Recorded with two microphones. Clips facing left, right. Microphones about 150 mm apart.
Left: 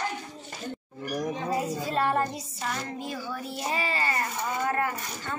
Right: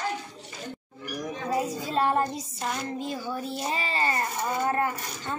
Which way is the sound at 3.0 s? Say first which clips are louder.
Right 3 dB; 25° right (ahead or behind).